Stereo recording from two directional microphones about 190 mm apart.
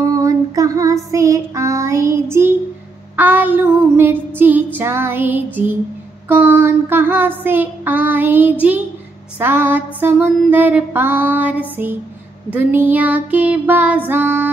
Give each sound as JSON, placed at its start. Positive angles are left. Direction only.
{"t": 0.0, "sound": "female singing", "side_deg": -15}
{"t": 1.1, "sound": "child singing", "side_deg": -15}